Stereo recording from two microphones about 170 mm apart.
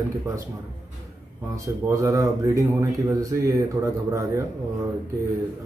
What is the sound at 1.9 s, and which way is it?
Speech, 20° right (ahead or behind).